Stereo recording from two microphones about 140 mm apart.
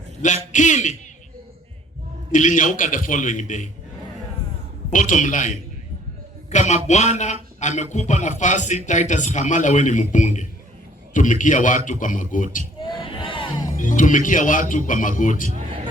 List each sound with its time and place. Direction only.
0.5 s speech: 60° left (ahead or behind)
2.3 s speech: 65° left (ahead or behind)
4.9 s speech: 65° left (ahead or behind)
13.0 s a sound: 35° left (ahead or behind)
13.7 s speech: 70° left (ahead or behind)